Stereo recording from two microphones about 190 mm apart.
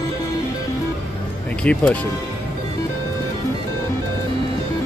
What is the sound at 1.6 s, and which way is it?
Speech, 5° left (ahead or behind).